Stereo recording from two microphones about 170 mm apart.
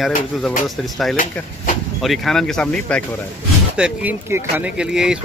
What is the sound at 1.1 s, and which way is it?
Speech, 55° left (ahead or behind).